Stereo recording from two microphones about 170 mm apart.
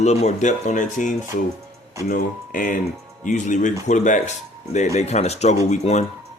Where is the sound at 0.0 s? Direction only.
40° left (ahead or behind).